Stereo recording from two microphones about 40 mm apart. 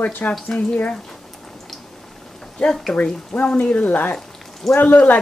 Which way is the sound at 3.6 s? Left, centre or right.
Left.